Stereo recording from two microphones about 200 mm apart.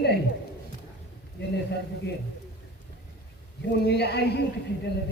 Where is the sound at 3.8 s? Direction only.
55° left (ahead or behind).